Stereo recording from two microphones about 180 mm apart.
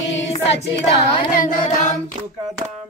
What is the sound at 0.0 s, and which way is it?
Choir, 90° left.